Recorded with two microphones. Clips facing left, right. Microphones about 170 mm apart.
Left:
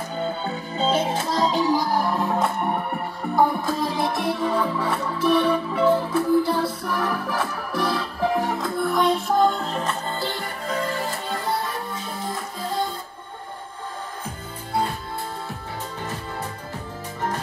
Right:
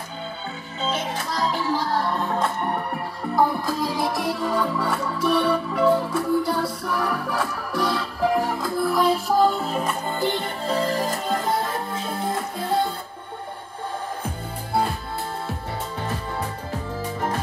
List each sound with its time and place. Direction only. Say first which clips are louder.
0.7 s music: left 5 dB; 30° left (ahead or behind); by 10.5 s 20° right (ahead or behind)
10.7 s music: right 3 dB; 35° right (ahead or behind); by 12.0 s 50° right (ahead or behind)